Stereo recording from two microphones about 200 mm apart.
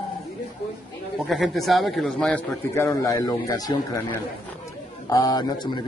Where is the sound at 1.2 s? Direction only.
Centre (ahead or behind); by 3.7 s 20° left (ahead or behind).